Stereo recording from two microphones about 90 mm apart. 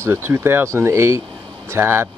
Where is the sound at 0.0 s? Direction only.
30° right (ahead or behind).